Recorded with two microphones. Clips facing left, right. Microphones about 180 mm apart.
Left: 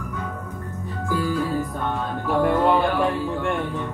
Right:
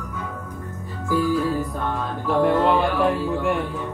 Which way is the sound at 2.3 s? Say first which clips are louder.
Right 1 dB; centre (ahead or behind).